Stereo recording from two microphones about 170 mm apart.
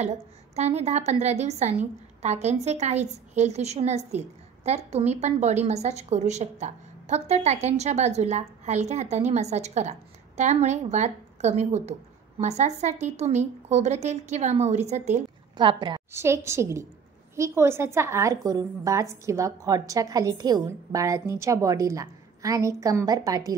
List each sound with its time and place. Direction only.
0.0 s a woman's voice: 40° right (ahead or behind)
15.5 s a woman's voice: 30° right (ahead or behind)
16.1 s a woman's voice: 15° right (ahead or behind)